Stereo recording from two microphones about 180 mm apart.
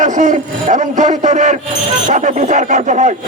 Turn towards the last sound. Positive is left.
turn(degrees=-40)  # may be behind; listen again after turning